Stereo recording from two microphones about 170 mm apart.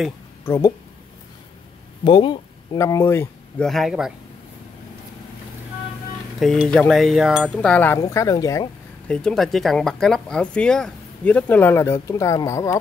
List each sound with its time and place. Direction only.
0.5 s speech: 15° left (ahead or behind)
2.0 s speech: 25° left (ahead or behind)
3.6 s speech: centre (ahead or behind)
6.4 s speech: centre (ahead or behind)
7.5 s speech: 10° left (ahead or behind)
9.0 s speech: 5° left (ahead or behind)